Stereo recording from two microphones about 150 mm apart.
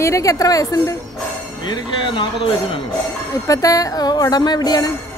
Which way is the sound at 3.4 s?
20° left (ahead or behind).